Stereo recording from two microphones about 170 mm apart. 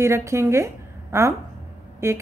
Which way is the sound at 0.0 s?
15° right (ahead or behind).